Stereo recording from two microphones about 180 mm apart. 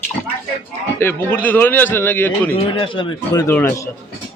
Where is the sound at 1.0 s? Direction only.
10° left (ahead or behind).